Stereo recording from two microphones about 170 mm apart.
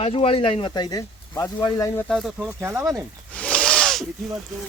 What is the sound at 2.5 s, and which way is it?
Speech, 15° right (ahead or behind).